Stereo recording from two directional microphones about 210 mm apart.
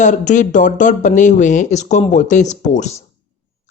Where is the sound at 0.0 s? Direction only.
35° left (ahead or behind).